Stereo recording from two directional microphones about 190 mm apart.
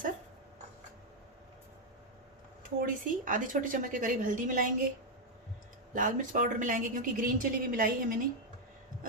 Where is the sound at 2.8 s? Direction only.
45° right (ahead or behind).